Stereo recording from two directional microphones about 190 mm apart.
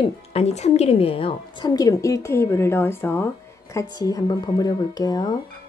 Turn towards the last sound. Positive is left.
turn(degrees=20)  # may be behind; listen again after turning